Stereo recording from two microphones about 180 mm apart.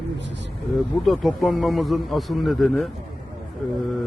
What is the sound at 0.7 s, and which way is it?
A man's voice, centre (ahead or behind).